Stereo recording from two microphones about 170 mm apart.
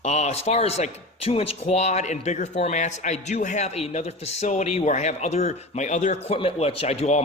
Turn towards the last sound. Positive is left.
turn(degrees=40)  # may be behind; listen again after turning